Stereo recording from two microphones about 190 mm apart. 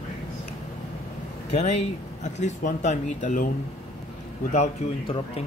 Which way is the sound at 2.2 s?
40° left (ahead or behind).